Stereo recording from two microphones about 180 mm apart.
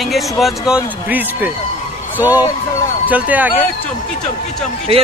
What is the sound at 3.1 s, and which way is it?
Speech, 10° right (ahead or behind).